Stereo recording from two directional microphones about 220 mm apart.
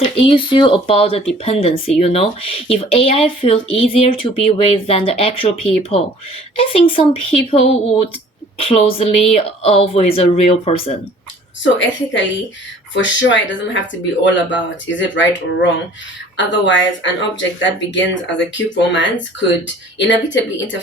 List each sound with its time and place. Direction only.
0.2 s speech: 25° left (ahead or behind)
11.6 s speech: 55° left (ahead or behind)